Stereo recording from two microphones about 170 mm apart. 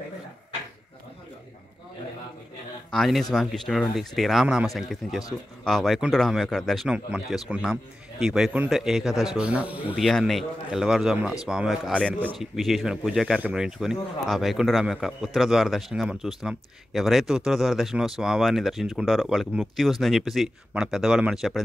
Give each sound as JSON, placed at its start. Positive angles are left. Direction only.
{"t": 2.9, "sound": "speech", "side_deg": 0}
{"t": 9.7, "sound": "speech", "side_deg": 35}
{"t": 9.9, "sound": "speech", "side_deg": 0}